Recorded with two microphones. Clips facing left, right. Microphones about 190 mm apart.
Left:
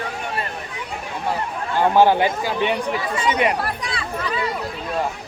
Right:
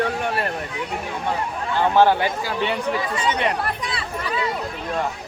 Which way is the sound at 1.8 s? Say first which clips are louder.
Left 2 dB; 15° left (ahead or behind).